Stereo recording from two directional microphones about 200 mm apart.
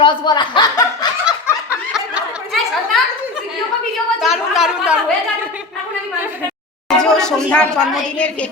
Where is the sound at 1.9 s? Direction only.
5° right (ahead or behind).